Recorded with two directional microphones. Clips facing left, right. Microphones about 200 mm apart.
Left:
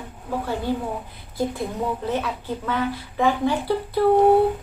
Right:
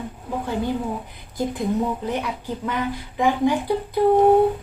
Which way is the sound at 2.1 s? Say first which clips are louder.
Left 1 dB; 15° right (ahead or behind).